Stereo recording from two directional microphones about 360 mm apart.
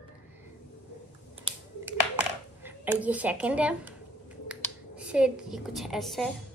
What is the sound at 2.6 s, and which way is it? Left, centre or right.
A woman's voice, centre.